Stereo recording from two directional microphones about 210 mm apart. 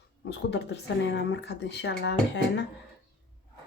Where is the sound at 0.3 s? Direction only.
55° left (ahead or behind).